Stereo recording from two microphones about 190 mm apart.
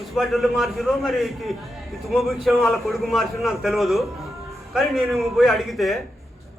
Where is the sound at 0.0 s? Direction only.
Centre (ahead or behind).